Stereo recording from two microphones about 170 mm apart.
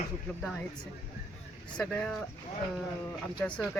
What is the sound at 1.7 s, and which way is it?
Speech, 5° left (ahead or behind).